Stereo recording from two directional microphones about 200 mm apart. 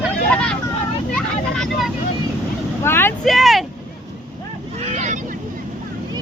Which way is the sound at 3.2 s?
Centre (ahead or behind).